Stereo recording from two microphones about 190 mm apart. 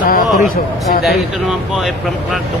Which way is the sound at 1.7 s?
Centre (ahead or behind).